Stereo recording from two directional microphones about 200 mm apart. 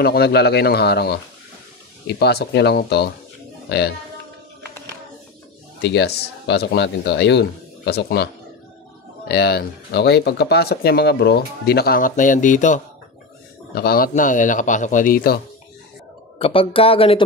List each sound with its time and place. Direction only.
0.0 s speech: 50° left (ahead or behind)
5.8 s speech: 55° left (ahead or behind)
9.3 s speech: 55° left (ahead or behind); by 12.8 s 40° left (ahead or behind)
13.7 s a man's voice: 50° left (ahead or behind)
16.3 s speech: 30° left (ahead or behind)